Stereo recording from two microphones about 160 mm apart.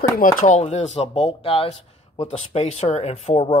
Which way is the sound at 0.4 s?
45° left (ahead or behind).